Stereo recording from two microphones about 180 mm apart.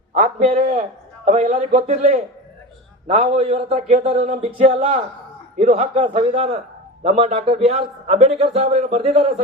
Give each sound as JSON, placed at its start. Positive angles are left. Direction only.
{"t": 0.1, "sound": "a man's voice", "side_deg": -40}